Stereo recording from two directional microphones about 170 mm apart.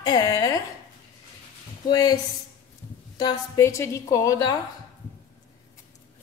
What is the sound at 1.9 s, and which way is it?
A woman's voice, 20° left (ahead or behind).